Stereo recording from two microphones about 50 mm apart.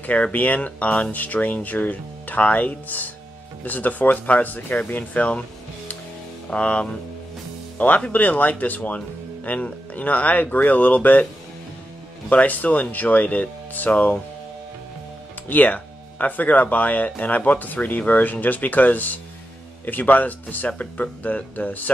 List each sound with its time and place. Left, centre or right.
0.0 s speech: left
6.5 s speech: left
12.3 s speech: left
15.4 s speech: left